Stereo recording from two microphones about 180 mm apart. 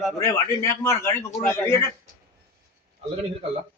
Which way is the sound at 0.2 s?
15° left (ahead or behind).